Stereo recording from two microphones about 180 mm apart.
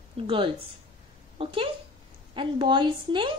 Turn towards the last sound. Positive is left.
turn(degrees=-25)  # may be behind; listen again after turning